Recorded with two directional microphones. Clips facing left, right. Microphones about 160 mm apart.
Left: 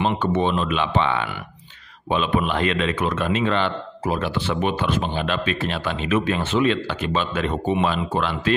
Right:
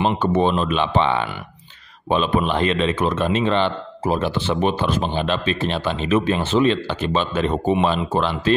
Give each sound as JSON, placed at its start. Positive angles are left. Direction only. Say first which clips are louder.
{"t": 0.0, "sound": "a man's voice", "louder": "right 3 dB", "side_deg": -30}